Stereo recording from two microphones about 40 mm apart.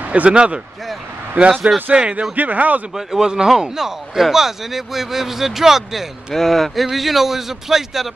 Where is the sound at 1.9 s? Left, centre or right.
Right.